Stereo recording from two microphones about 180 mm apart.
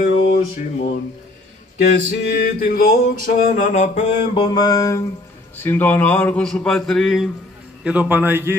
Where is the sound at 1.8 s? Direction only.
65° left (ahead or behind); by 4.0 s 45° left (ahead or behind).